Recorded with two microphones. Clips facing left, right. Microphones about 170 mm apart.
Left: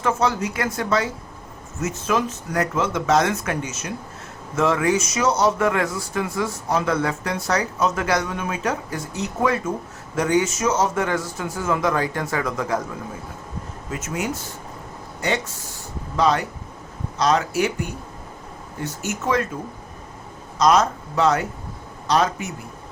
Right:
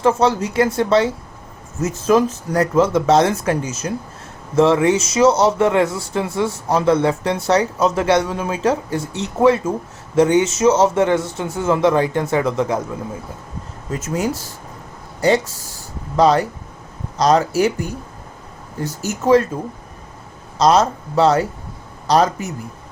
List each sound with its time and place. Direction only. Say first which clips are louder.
0.0 s speech: right 6 dB; 30° right (ahead or behind)
13.9 s speech: right 5 dB; 35° right (ahead or behind)
20.6 s a man's voice: right 3 dB; 30° right (ahead or behind)